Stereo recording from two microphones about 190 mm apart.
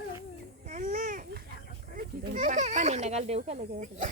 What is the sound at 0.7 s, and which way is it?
Babbling, 45° right (ahead or behind).